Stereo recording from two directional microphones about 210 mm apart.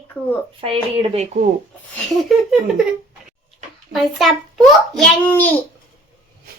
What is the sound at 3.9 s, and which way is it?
A child's voice, centre (ahead or behind).